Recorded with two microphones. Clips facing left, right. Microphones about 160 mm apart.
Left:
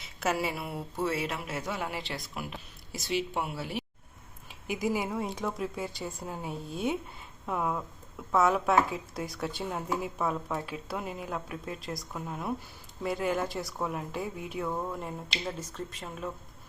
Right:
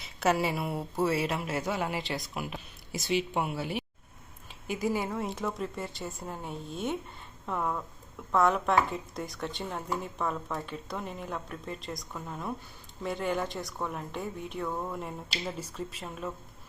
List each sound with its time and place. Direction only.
0.0 s speech: centre (ahead or behind)
4.6 s speech: 10° left (ahead or behind)
5.1 s speech: centre (ahead or behind)